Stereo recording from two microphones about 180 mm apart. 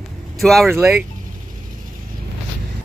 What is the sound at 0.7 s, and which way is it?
Speech, 15° right (ahead or behind).